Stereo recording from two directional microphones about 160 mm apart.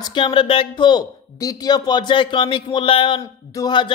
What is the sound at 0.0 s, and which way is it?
A man's voice, 30° left (ahead or behind).